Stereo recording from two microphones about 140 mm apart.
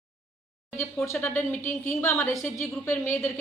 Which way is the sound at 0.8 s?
20° left (ahead or behind).